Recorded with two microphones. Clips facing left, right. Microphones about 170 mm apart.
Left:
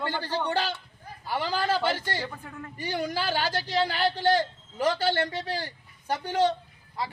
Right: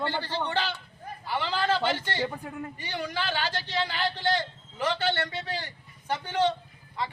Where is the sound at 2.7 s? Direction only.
45° left (ahead or behind).